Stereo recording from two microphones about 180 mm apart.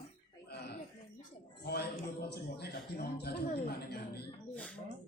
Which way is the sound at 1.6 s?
60° left (ahead or behind).